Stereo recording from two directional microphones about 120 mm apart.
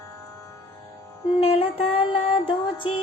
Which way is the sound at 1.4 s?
50° left (ahead or behind).